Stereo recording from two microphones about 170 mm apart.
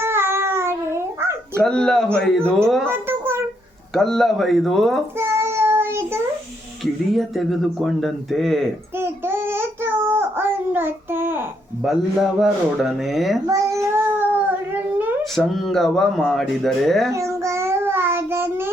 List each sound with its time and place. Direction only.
0.0 s a sound: 15° right (ahead or behind)
1.6 s speech: 5° left (ahead or behind)
2.9 s a sound: 15° right (ahead or behind)
3.9 s speech: 5° left (ahead or behind)
5.1 s child singing: 15° right (ahead or behind)
6.8 s speech: centre (ahead or behind)
9.0 s child singing: 15° right (ahead or behind)
11.9 s speech: centre (ahead or behind)
13.5 s child singing: 20° right (ahead or behind)
15.2 s speech: centre (ahead or behind)
17.2 s child singing: 15° right (ahead or behind)